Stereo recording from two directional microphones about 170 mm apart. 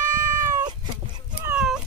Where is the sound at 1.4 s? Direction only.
5° right (ahead or behind).